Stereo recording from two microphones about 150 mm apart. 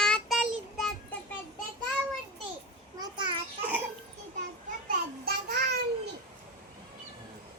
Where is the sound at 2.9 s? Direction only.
30° right (ahead or behind).